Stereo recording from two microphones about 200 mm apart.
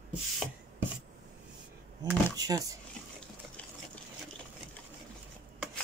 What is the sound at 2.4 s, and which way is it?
Speech, 20° right (ahead or behind).